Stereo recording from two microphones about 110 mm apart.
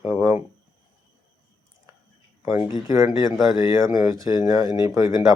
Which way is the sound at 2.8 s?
30° right (ahead or behind).